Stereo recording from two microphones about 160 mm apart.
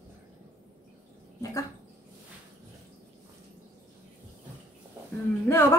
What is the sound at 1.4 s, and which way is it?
Speech, 20° left (ahead or behind).